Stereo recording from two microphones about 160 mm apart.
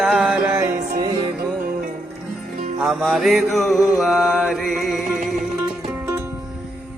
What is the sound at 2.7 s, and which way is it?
Music, centre (ahead or behind).